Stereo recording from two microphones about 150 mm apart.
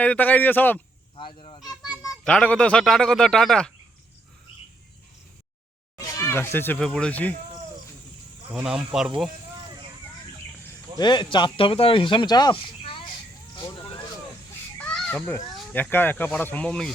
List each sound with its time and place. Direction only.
0.0 s speech: 10° left (ahead or behind)
1.1 s speech: 35° left (ahead or behind)
1.9 s a sound: 5° right (ahead or behind)
2.2 s speech: 10° left (ahead or behind)
6.1 s speech: 20° left (ahead or behind)
8.5 s speech: 5° right (ahead or behind)
9.6 s vehicle: 30° right (ahead or behind)
10.9 s speech: 30° left (ahead or behind)
14.8 s children playing: 10° left (ahead or behind)
15.7 s speech: 10° left (ahead or behind)